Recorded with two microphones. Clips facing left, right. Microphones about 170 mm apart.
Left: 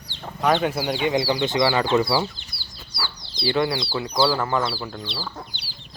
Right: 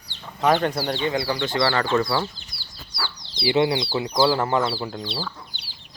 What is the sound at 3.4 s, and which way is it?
Speech, 20° right (ahead or behind).